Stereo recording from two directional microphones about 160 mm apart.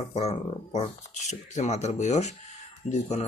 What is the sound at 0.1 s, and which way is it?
Speech, 40° left (ahead or behind).